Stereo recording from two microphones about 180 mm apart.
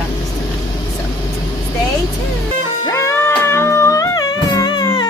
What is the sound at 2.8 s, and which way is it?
Music, 15° left (ahead or behind).